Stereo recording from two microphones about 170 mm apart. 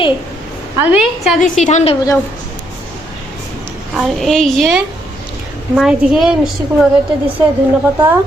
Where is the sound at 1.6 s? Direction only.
40° left (ahead or behind).